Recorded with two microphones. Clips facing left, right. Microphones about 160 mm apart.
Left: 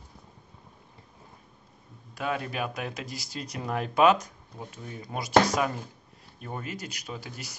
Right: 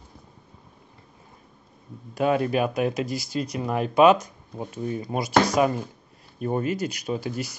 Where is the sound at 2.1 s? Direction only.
30° right (ahead or behind).